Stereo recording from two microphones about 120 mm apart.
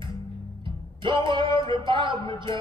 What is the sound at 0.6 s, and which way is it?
Music, 45° right (ahead or behind).